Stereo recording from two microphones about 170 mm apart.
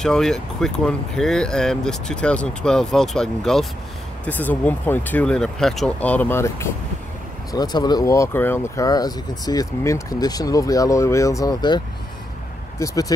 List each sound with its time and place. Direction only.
0.0 s speech: 5° left (ahead or behind); by 11.8 s 25° left (ahead or behind)
12.7 s vehicle: 20° left (ahead or behind)